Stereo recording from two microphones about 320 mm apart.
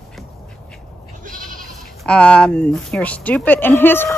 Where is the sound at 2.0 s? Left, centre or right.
Centre.